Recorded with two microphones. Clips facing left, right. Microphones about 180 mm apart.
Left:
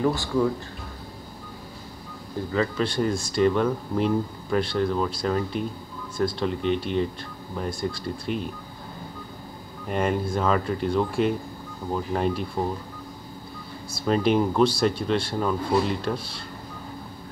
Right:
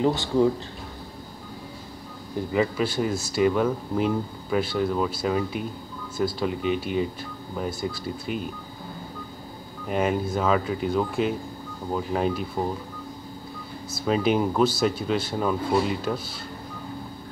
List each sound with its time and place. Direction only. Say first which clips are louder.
0.0 s speech: right 2 dB; 20° right (ahead or behind)
2.5 s speech: right 1 dB; 10° right (ahead or behind)
9.8 s speech: right 1 dB; 5° right (ahead or behind)
13.9 s speech: left 1 dB; centre (ahead or behind)